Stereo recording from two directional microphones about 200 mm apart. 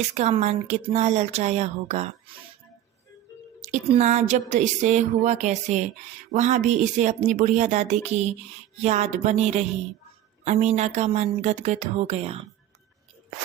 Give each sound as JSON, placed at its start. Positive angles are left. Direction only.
{"t": 0.0, "sound": "speech", "side_deg": -35}
{"t": 3.6, "sound": "speech", "side_deg": -35}